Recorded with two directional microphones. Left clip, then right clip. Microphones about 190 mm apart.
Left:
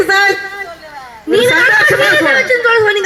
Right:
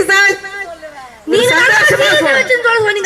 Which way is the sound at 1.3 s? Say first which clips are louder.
Left 1 dB; 45° left (ahead or behind).